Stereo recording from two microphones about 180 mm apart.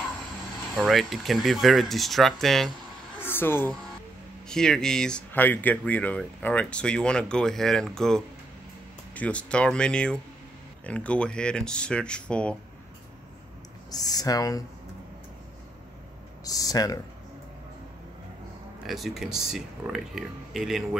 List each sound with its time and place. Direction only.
0.7 s speech: centre (ahead or behind)
3.2 s speech: 10° left (ahead or behind)
13.8 s speech: 20° left (ahead or behind)
16.4 s speech: 20° left (ahead or behind)
18.9 s speech: centre (ahead or behind)